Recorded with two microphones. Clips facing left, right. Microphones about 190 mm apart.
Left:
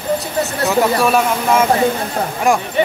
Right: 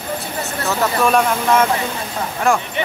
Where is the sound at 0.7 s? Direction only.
10° left (ahead or behind).